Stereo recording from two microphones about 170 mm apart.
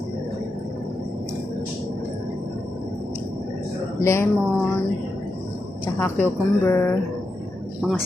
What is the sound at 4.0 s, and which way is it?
Speech, 15° left (ahead or behind).